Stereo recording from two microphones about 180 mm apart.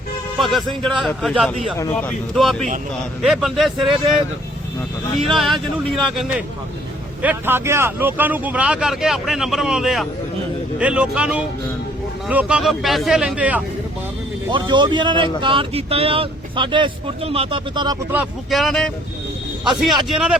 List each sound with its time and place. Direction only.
0.3 s speech: centre (ahead or behind)
5.3 s speech: centre (ahead or behind)
7.2 s speech: 10° right (ahead or behind)
14.5 s a man's voice: 25° right (ahead or behind)
18.1 s speech: 5° right (ahead or behind)